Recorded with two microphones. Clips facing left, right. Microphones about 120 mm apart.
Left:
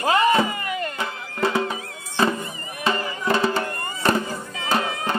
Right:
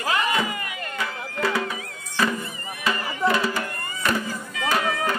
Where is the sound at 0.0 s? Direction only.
35° left (ahead or behind).